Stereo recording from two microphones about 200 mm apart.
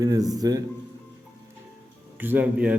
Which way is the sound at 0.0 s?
20° right (ahead or behind).